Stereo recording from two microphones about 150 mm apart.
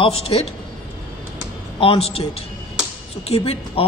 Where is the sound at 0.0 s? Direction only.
40° left (ahead or behind).